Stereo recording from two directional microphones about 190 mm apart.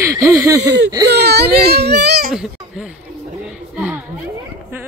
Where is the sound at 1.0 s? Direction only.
60° right (ahead or behind).